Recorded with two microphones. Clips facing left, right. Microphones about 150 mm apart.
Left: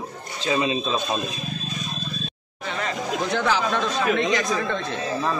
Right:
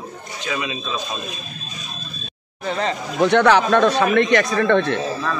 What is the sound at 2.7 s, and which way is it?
Speech, 30° right (ahead or behind).